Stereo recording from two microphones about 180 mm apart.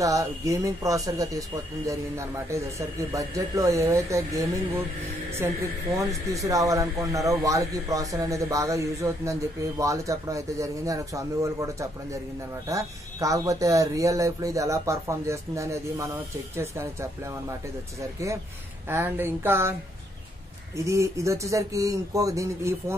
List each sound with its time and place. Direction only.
0.0 s speech: 20° right (ahead or behind)
18.9 s speech: 10° right (ahead or behind)
20.7 s speech: 15° right (ahead or behind)